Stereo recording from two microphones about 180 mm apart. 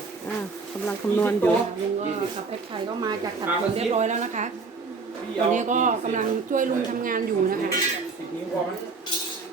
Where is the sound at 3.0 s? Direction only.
20° right (ahead or behind).